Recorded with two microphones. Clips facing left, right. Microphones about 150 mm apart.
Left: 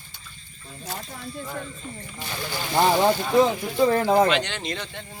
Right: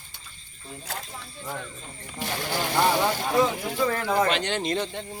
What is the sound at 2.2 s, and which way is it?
Speech, 75° right (ahead or behind).